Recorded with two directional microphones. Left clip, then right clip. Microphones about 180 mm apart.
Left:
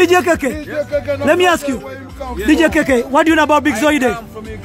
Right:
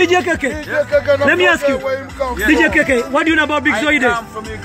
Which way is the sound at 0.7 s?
Centre (ahead or behind).